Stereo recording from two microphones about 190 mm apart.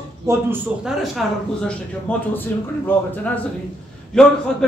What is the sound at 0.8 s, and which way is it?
A man's voice, centre (ahead or behind).